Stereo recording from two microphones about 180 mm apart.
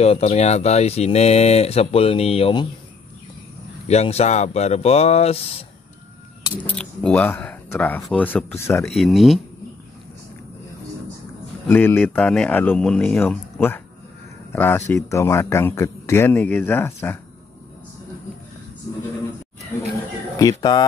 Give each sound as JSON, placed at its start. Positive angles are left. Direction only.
{"t": 0.0, "sound": "speech", "side_deg": 35}
{"t": 3.8, "sound": "speech", "side_deg": 35}
{"t": 6.6, "sound": "speech", "side_deg": 5}
{"t": 8.8, "sound": "speech", "side_deg": 0}
{"t": 11.6, "sound": "speech", "side_deg": 10}
{"t": 20.3, "sound": "speech", "side_deg": 20}